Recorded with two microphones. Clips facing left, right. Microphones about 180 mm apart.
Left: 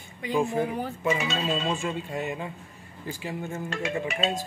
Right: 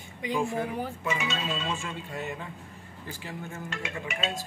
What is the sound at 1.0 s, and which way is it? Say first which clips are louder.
Speech: left 7 dB; 35° left (ahead or behind).